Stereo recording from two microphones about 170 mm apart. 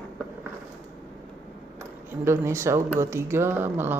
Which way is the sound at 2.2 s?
15° right (ahead or behind).